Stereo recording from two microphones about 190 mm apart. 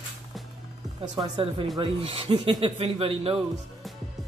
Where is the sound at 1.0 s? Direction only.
20° right (ahead or behind).